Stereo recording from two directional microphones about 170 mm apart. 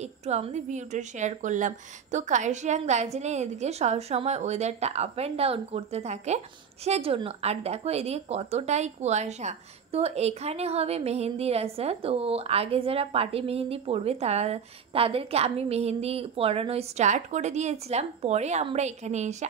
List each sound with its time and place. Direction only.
0.0 s a woman's voice: 40° right (ahead or behind)